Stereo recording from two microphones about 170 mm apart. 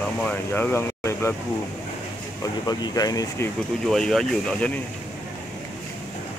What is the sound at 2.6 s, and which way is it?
Speech, 20° left (ahead or behind).